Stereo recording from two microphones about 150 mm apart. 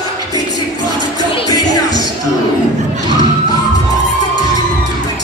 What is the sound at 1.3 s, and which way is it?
Music, 25° left (ahead or behind).